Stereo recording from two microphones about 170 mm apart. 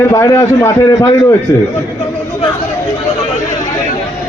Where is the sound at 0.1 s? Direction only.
20° left (ahead or behind).